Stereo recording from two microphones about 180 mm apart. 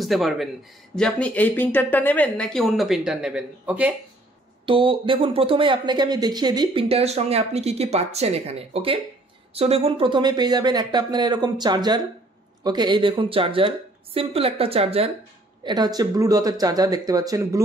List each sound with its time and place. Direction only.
0.0 s speech: centre (ahead or behind)
4.6 s a woman's voice: 30° right (ahead or behind)
15.6 s a woman's voice: 20° right (ahead or behind)